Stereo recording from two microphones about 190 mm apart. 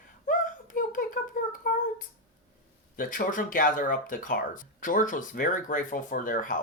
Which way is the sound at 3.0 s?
45° left (ahead or behind).